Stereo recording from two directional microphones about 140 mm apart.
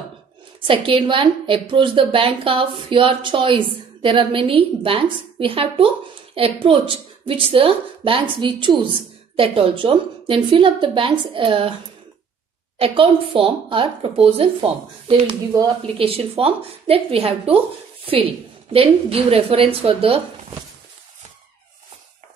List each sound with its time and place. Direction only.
0.7 s a woman's voice: 35° right (ahead or behind)
12.7 s a woman's voice: 40° right (ahead or behind)